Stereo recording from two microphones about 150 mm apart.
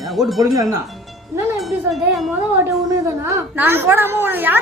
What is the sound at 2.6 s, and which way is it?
A woman's voice, 20° right (ahead or behind).